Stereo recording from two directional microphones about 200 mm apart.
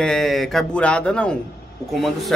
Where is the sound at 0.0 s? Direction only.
Centre (ahead or behind).